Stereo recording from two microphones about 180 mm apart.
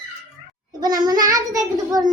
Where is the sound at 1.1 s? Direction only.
20° right (ahead or behind).